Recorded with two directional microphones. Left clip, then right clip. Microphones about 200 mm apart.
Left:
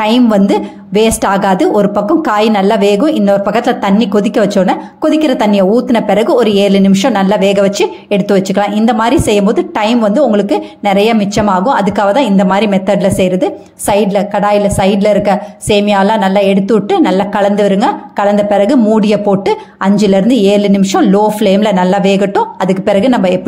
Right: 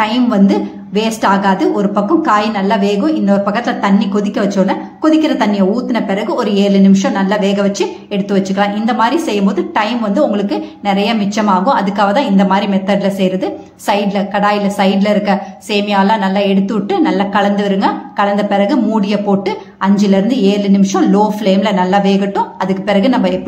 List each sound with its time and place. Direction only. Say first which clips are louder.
0.0 s a woman's voice: left 3 dB; 40° left (ahead or behind)